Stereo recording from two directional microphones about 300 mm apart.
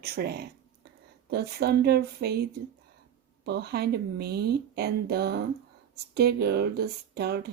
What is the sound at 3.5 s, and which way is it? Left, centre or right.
Speech, right.